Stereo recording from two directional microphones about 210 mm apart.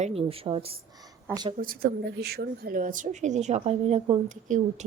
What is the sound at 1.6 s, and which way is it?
Speech, 45° right (ahead or behind).